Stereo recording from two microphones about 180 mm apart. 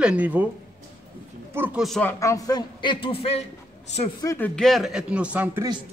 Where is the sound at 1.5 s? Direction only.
Centre (ahead or behind).